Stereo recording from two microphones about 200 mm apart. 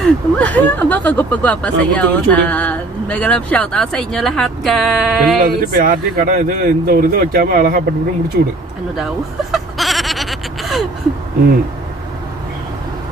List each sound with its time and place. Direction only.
0.0 s speech: 5° left (ahead or behind)
5.4 s speech: 45° right (ahead or behind)
8.9 s a sound: centre (ahead or behind)